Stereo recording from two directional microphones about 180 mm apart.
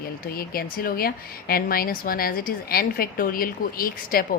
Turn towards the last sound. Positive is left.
turn(degrees=55)  # may be behind; listen again after turning